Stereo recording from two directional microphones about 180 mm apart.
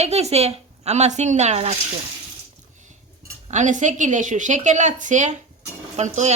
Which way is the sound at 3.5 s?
40° right (ahead or behind).